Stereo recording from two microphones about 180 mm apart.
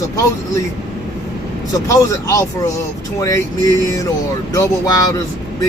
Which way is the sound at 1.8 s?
20° left (ahead or behind).